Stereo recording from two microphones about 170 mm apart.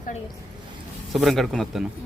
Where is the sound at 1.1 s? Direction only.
Centre (ahead or behind).